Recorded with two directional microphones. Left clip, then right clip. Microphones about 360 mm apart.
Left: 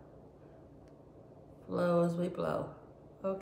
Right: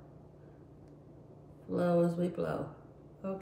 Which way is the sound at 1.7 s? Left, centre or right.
Centre.